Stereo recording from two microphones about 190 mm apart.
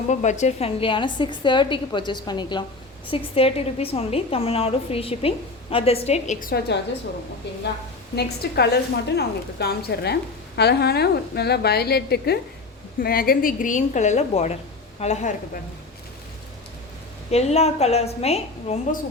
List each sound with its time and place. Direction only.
0.1 s a woman's voice: 40° left (ahead or behind)
8.1 s a woman's voice: 60° left (ahead or behind); by 15.3 s 35° left (ahead or behind)
17.3 s a woman's voice: 35° left (ahead or behind)